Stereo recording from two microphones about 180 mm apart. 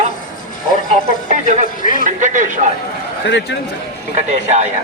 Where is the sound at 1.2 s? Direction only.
45° right (ahead or behind).